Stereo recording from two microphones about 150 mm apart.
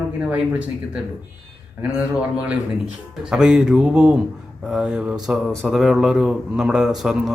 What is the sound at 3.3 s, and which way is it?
A man's voice, 5° right (ahead or behind).